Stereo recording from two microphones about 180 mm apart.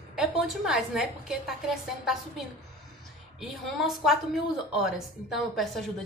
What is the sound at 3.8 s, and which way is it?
A woman's voice, centre (ahead or behind).